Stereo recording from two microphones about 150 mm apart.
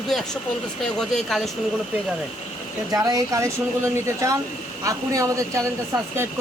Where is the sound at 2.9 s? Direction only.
25° right (ahead or behind).